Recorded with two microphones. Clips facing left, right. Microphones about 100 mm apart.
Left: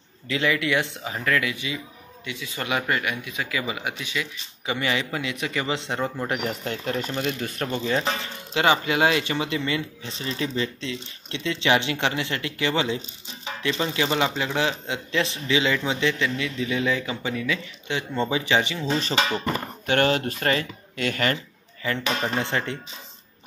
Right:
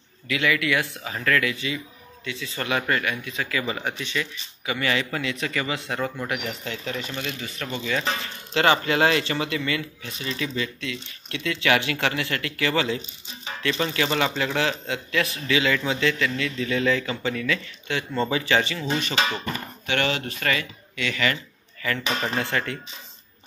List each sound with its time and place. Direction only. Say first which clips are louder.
0.3 s a man's voice: even; 25° left (ahead or behind)
6.2 s speech: left 3 dB; 40° left (ahead or behind)
7.6 s speech: left 2 dB; 35° left (ahead or behind)
8.5 s a man's voice: right 1 dB; 15° left (ahead or behind)
18.9 s speech: left 1 dB; 40° left (ahead or behind)
21.8 s a man's voice: left 1 dB; 20° left (ahead or behind)